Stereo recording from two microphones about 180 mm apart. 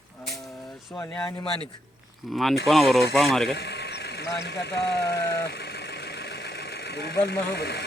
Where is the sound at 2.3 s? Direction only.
Centre (ahead or behind).